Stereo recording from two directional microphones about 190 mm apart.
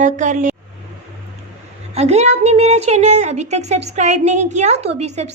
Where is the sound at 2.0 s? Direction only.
35° right (ahead or behind).